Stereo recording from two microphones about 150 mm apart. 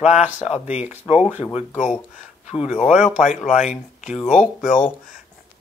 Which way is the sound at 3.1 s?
50° left (ahead or behind).